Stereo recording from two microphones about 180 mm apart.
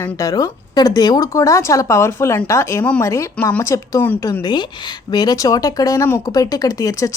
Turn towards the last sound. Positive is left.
turn(degrees=20)  # may be behind; listen again after turning